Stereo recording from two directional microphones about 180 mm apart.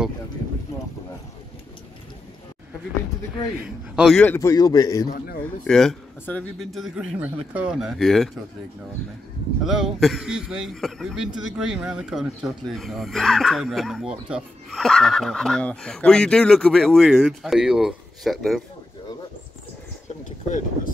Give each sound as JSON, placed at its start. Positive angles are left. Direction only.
{"t": 3.6, "sound": "a man's voice", "side_deg": -5}
{"t": 4.2, "sound": "a man's voice", "side_deg": 15}
{"t": 5.0, "sound": "a man's voice", "side_deg": 55}
{"t": 5.6, "sound": "a man's voice", "side_deg": 0}
{"t": 9.7, "sound": "a man's voice", "side_deg": 0}
{"t": 20.4, "sound": "speech", "side_deg": 45}